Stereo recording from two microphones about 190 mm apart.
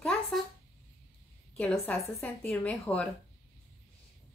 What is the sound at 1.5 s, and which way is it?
A woman's voice, 5° left (ahead or behind).